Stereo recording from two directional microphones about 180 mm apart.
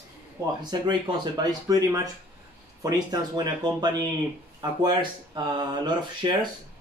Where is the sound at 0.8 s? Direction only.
25° right (ahead or behind).